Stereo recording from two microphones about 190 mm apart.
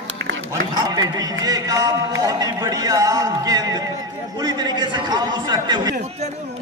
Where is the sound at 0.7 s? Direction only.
20° right (ahead or behind).